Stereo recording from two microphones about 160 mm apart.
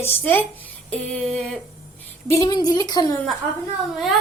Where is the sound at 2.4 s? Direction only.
25° left (ahead or behind).